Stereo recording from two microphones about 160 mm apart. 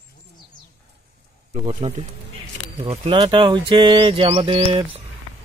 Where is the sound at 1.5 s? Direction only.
35° right (ahead or behind).